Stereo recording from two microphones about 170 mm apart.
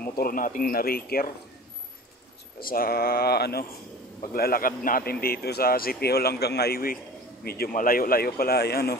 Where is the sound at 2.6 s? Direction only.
60° left (ahead or behind).